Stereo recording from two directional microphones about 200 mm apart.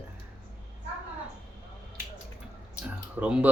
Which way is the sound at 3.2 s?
5° right (ahead or behind).